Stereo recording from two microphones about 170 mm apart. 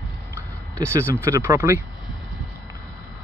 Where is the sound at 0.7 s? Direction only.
15° right (ahead or behind).